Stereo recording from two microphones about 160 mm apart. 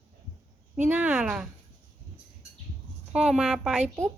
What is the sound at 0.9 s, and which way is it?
Speech, 10° right (ahead or behind).